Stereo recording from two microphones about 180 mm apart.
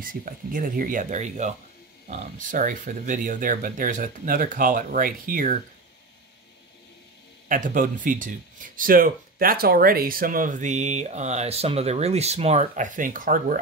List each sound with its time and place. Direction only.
0.0 s speech: 50° right (ahead or behind)
7.4 s speech: 50° right (ahead or behind)